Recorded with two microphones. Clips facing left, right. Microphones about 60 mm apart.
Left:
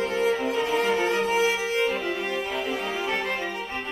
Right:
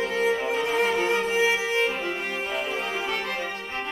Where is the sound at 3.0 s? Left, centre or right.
Left.